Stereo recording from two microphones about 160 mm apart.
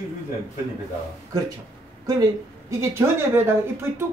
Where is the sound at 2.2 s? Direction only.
20° right (ahead or behind).